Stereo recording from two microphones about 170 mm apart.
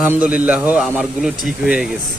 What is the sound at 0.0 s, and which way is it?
Speech, 10° right (ahead or behind).